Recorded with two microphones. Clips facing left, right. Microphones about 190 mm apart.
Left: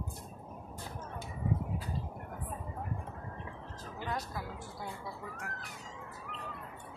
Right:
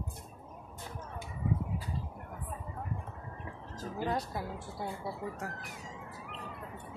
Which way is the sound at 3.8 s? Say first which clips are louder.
Right 6 dB; 35° right (ahead or behind).